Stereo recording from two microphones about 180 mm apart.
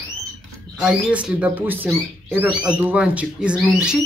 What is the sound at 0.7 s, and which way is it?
A man's voice, 5° right (ahead or behind).